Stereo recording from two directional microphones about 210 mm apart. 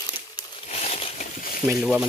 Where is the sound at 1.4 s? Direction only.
45° left (ahead or behind).